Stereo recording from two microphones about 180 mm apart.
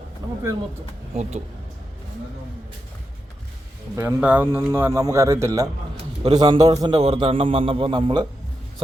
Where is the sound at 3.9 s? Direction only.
10° right (ahead or behind).